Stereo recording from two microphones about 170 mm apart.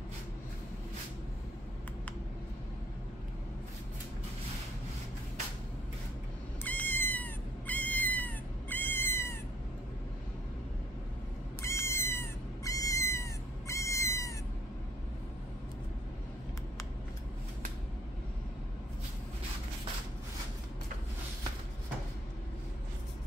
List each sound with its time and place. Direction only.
6.6 s cat: 10° left (ahead or behind)
11.6 s cat: 15° left (ahead or behind)